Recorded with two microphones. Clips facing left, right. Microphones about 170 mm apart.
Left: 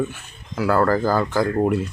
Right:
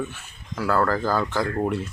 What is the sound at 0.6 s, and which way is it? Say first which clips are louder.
Speech: left 4 dB; 5° left (ahead or behind).